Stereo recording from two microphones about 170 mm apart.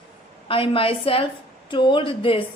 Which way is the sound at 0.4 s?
30° left (ahead or behind).